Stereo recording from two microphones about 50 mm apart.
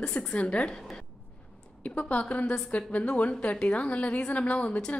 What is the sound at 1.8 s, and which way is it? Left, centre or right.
A woman's voice, left.